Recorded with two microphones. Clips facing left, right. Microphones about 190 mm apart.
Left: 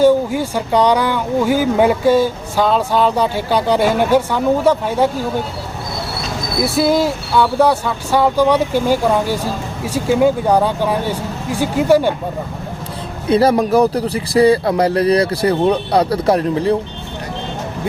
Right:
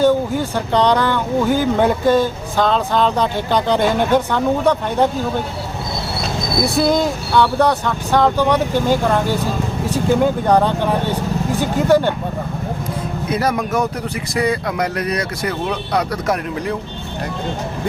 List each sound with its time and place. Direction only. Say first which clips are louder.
0.0 s speech: left 3 dB; 10° left (ahead or behind)
6.7 s speech: left 3 dB; 5° left (ahead or behind)
13.3 s speech: left 7 dB; 30° left (ahead or behind)